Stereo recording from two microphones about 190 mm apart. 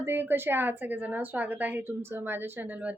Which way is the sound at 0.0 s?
10° right (ahead or behind).